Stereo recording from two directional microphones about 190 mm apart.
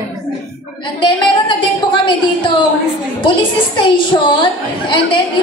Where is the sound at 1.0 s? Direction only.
25° left (ahead or behind).